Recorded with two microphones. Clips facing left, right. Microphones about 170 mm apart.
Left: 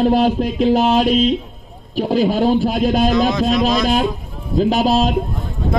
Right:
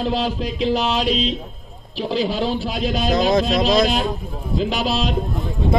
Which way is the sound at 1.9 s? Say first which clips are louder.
Left 5 dB; 50° left (ahead or behind).